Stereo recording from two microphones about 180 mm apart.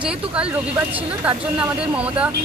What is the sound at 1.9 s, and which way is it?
Speech, 5° right (ahead or behind).